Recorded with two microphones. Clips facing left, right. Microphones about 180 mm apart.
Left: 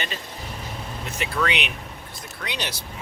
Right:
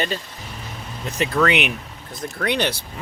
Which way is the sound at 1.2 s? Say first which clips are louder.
Right 7 dB; 45° right (ahead or behind).